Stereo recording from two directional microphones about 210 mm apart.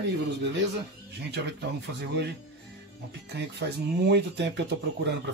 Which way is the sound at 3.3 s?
50° right (ahead or behind).